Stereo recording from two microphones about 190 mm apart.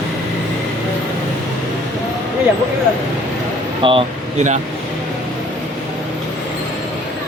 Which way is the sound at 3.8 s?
30° right (ahead or behind).